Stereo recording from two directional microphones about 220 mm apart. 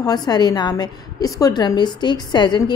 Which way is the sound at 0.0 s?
20° left (ahead or behind).